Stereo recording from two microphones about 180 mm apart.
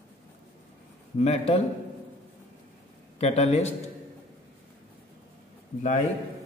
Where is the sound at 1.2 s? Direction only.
35° left (ahead or behind).